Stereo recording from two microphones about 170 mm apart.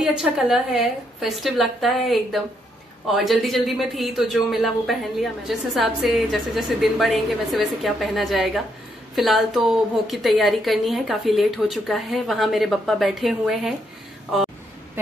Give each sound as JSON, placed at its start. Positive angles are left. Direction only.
{"t": 0.0, "sound": "a man's voice", "side_deg": -5}